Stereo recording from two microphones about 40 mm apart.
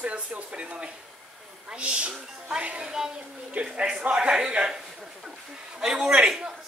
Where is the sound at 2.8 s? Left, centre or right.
Centre.